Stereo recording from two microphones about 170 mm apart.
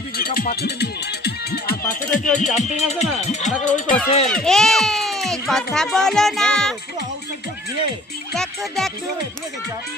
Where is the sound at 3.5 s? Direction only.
50° left (ahead or behind).